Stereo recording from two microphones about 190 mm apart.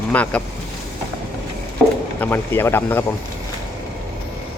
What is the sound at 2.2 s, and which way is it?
Speech, 10° left (ahead or behind).